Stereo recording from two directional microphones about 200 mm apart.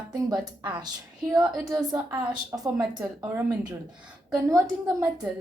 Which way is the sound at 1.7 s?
15° right (ahead or behind).